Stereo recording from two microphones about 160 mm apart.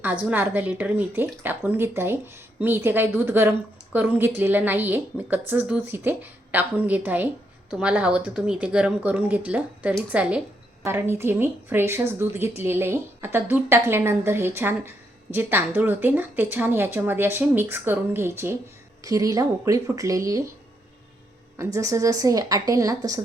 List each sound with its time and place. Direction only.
0.0 s a woman's voice: 10° right (ahead or behind)
21.6 s a woman's voice: 20° right (ahead or behind)